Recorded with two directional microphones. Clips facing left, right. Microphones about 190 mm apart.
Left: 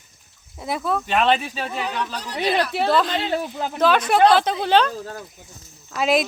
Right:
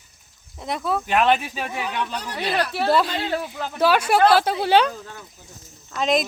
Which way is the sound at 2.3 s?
20° left (ahead or behind).